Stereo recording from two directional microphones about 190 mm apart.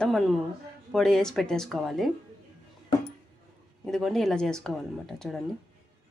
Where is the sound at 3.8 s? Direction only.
Centre (ahead or behind).